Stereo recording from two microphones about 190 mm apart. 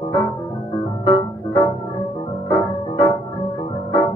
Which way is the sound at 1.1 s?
20° left (ahead or behind).